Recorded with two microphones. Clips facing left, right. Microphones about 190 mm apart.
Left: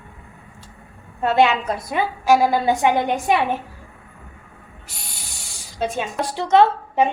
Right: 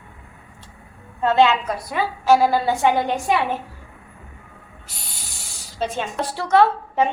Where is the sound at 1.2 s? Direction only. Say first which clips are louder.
Even; 15° left (ahead or behind).